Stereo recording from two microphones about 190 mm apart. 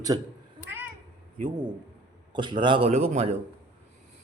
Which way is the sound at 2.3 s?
25° right (ahead or behind).